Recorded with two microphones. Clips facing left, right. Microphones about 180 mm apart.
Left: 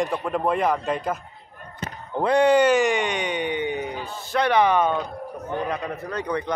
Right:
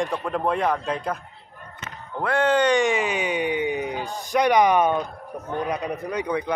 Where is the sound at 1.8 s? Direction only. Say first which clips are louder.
Left 6 dB; 35° left (ahead or behind).